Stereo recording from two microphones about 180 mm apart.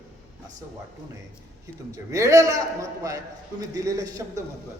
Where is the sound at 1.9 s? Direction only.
15° right (ahead or behind).